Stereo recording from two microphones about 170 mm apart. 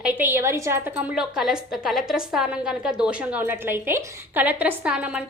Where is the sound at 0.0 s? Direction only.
10° right (ahead or behind).